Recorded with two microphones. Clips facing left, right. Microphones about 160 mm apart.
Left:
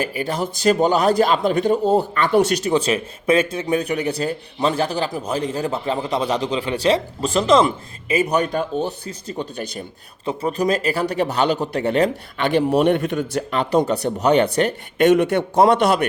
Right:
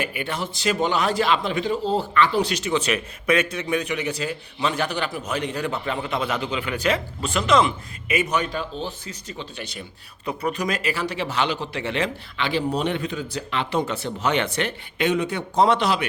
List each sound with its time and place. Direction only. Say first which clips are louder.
0.0 s speech: left 5 dB; 35° left (ahead or behind)
10.2 s speech: left 5 dB; 30° left (ahead or behind)
12.5 s a man's voice: left 8 dB; 55° left (ahead or behind)
13.5 s speech: left 6 dB; 40° left (ahead or behind); by 15.6 s 65° left (ahead or behind)
15.6 s speech: left 4 dB; 45° left (ahead or behind)